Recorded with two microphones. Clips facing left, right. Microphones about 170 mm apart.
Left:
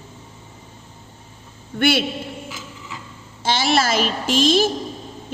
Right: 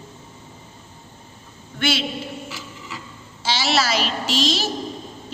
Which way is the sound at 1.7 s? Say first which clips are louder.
Left 5 dB; 55° left (ahead or behind).